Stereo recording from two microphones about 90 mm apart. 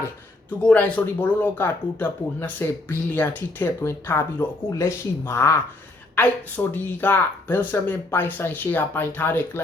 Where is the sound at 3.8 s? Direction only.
30° left (ahead or behind).